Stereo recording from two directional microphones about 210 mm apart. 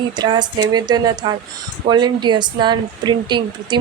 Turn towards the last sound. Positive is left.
turn(degrees=-20)  # may be behind; listen again after turning